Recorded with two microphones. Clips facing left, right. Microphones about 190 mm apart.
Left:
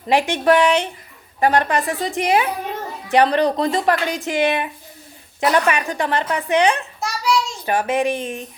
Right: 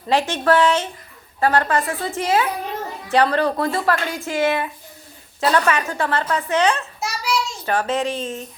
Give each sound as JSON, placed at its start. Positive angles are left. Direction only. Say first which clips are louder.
{"t": 0.1, "sound": "a woman's voice", "louder": "left 2 dB", "side_deg": 15}
{"t": 7.0, "sound": "child singing", "louder": "left 5 dB", "side_deg": 0}
{"t": 7.6, "sound": "speech", "louder": "left 2 dB", "side_deg": 15}